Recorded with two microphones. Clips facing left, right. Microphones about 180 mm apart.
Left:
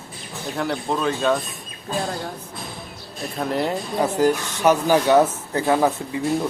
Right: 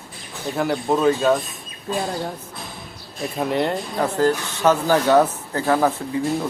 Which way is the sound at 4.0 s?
10° left (ahead or behind).